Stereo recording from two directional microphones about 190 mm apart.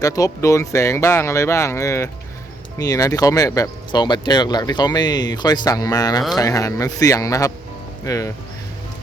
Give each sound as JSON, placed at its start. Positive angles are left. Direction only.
{"t": 0.0, "sound": "speech", "side_deg": 20}